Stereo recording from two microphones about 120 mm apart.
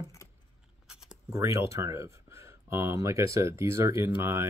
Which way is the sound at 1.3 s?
25° right (ahead or behind).